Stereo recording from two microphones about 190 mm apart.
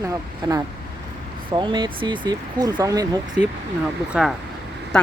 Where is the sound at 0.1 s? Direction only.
20° right (ahead or behind).